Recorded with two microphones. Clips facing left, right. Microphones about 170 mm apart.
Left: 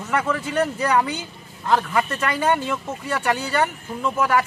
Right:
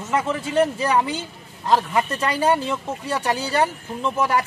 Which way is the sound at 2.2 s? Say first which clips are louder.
Right 1 dB; 30° right (ahead or behind).